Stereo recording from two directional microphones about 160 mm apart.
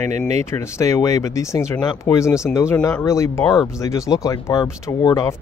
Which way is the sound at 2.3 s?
5° right (ahead or behind).